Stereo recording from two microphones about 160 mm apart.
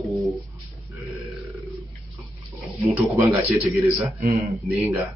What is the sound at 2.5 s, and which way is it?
Speech, 20° right (ahead or behind).